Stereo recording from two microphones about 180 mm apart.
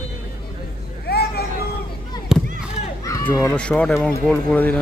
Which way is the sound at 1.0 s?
60° left (ahead or behind).